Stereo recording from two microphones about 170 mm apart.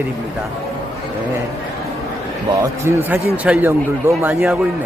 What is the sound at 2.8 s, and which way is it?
Speech, 15° right (ahead or behind).